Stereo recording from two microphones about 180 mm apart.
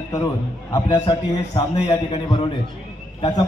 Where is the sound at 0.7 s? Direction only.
25° left (ahead or behind).